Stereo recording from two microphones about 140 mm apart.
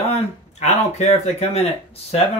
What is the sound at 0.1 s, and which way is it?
Speech, 50° left (ahead or behind).